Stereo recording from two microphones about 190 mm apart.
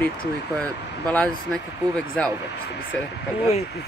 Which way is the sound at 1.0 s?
5° left (ahead or behind).